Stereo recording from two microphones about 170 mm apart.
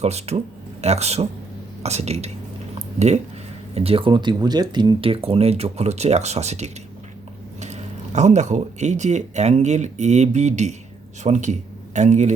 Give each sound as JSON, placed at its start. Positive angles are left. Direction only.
{"t": 0.0, "sound": "speech", "side_deg": -40}
{"t": 2.7, "sound": "a sound", "side_deg": -40}
{"t": 3.8, "sound": "speech", "side_deg": -35}